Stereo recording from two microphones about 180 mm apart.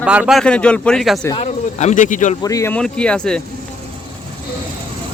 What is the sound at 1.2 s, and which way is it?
Speech, 25° left (ahead or behind).